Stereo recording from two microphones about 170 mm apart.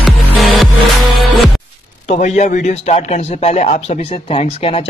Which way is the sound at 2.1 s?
45° left (ahead or behind).